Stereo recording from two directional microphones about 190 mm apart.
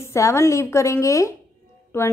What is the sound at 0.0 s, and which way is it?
A woman's voice, 15° left (ahead or behind).